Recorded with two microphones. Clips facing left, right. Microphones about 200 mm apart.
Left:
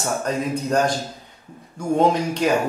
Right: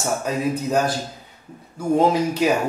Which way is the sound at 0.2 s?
5° right (ahead or behind).